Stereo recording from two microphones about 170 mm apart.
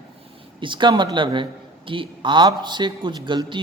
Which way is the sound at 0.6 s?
30° right (ahead or behind).